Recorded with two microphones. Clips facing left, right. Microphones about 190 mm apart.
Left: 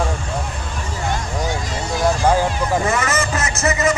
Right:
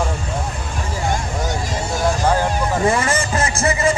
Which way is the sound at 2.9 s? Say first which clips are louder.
Right 2 dB; 30° right (ahead or behind).